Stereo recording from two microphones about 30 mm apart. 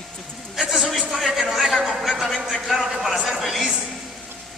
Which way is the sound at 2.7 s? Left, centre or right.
Centre.